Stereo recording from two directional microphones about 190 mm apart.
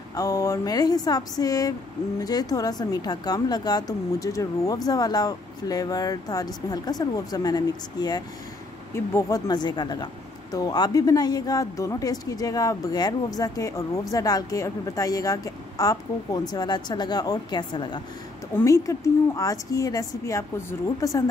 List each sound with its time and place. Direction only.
0.1 s speech: 20° left (ahead or behind)